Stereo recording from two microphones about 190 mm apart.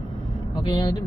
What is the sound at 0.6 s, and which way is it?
Speech, 20° left (ahead or behind).